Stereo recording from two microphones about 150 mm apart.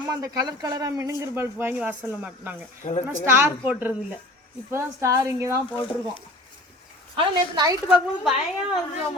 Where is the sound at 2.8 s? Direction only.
50° left (ahead or behind).